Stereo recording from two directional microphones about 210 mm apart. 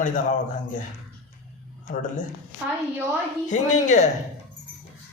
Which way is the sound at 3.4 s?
35° left (ahead or behind).